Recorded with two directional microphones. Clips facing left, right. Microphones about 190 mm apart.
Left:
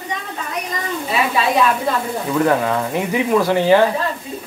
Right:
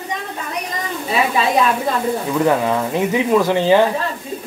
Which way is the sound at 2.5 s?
15° right (ahead or behind).